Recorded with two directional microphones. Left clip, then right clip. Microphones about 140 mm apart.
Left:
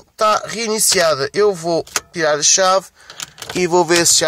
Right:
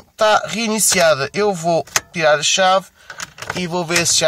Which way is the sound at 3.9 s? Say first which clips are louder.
Left 3 dB; 30° left (ahead or behind).